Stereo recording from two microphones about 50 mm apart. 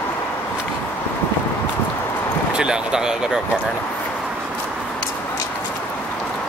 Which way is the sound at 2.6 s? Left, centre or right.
Centre.